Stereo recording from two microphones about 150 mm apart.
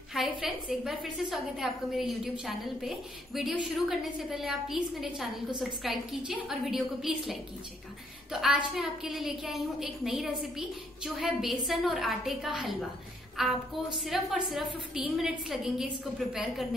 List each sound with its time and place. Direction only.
0.1 s a woman's voice: 5° right (ahead or behind)